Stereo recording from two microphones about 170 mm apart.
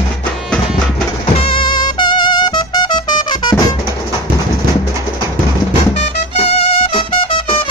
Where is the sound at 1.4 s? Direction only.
30° left (ahead or behind).